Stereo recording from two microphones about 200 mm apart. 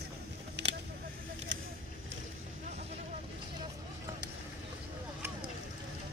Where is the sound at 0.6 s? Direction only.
60° right (ahead or behind).